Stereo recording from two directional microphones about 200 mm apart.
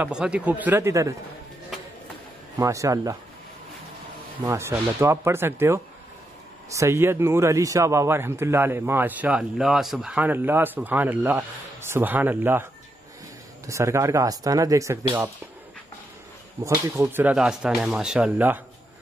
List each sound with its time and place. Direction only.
0.0 s speech: 5° right (ahead or behind)
2.6 s speech: 15° right (ahead or behind)
4.5 s speech: 15° right (ahead or behind)
13.7 s speech: 15° right (ahead or behind)
16.6 s speech: 10° right (ahead or behind)